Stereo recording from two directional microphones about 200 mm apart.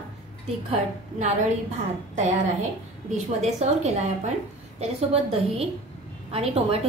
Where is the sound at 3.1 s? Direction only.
35° right (ahead or behind).